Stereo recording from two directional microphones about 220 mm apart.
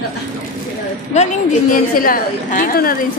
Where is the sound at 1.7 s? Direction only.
40° left (ahead or behind).